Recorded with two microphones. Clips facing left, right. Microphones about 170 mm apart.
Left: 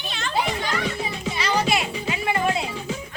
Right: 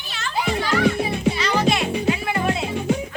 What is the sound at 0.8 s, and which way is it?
Speech, 60° right (ahead or behind).